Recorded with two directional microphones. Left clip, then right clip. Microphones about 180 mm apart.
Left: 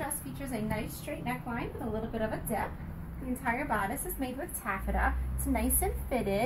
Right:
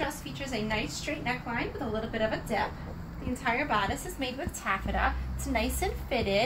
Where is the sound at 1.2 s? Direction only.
10° right (ahead or behind).